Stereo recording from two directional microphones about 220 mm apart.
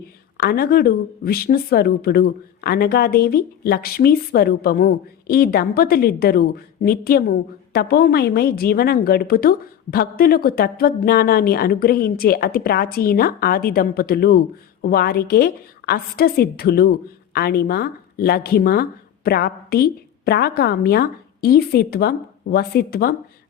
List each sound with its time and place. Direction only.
0.3 s speech: 45° left (ahead or behind)